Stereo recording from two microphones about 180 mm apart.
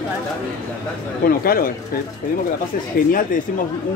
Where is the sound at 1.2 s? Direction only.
55° left (ahead or behind).